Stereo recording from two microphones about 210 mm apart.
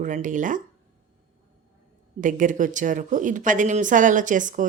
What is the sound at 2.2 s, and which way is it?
Speech, 40° right (ahead or behind).